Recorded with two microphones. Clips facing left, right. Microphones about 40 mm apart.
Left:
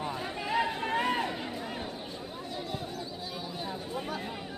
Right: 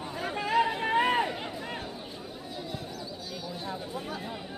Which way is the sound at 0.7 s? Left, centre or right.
Right.